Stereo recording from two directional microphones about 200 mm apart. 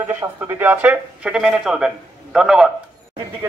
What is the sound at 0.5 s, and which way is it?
Speech, 10° right (ahead or behind).